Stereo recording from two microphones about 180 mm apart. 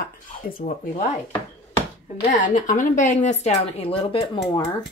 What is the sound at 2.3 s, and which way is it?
Speech, 45° left (ahead or behind).